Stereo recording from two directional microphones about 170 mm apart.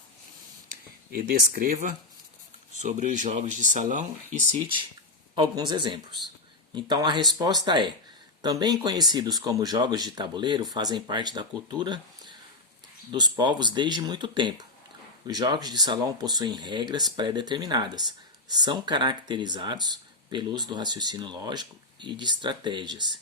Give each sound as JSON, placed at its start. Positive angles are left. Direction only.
{"t": 1.1, "sound": "speech", "side_deg": -60}
{"t": 5.3, "sound": "speech", "side_deg": -25}